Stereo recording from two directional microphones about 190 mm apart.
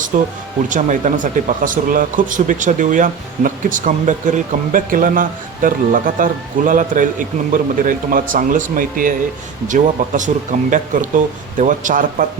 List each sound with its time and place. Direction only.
0.1 s speech: 45° right (ahead or behind)